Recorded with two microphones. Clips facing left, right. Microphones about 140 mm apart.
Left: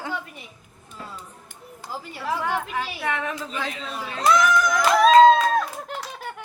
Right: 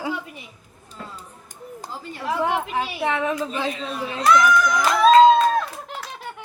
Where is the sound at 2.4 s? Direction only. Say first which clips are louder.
Right 6 dB; 20° right (ahead or behind).